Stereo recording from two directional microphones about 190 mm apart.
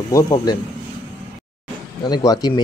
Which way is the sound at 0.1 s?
20° left (ahead or behind).